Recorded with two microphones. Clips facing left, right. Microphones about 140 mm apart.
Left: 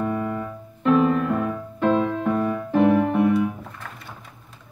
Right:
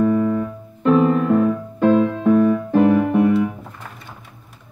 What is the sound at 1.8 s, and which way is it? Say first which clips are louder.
Music: right 4 dB; 10° right (ahead or behind).